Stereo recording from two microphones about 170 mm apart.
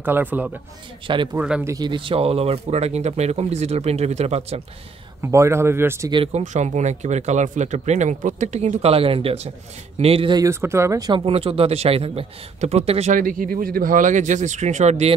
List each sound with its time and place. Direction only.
0.0 s speech: 10° right (ahead or behind)
1.0 s speech: 30° right (ahead or behind)
1.3 s speech: 10° right (ahead or behind)
1.7 s speech: 25° right (ahead or behind)
5.2 s speech: 15° right (ahead or behind)
6.1 s speech: 35° right (ahead or behind)
13.1 s speech: 55° right (ahead or behind)